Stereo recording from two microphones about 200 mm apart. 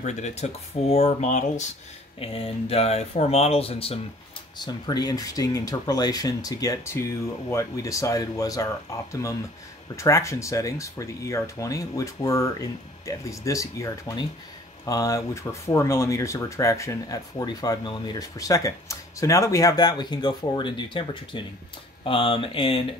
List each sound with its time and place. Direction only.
0.0 s speech: 35° left (ahead or behind)